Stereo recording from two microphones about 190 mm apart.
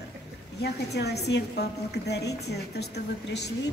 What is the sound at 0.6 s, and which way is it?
A woman's voice, 60° left (ahead or behind).